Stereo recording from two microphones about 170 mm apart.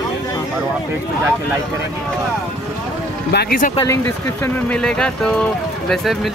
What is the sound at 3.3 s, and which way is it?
Speech, 65° left (ahead or behind).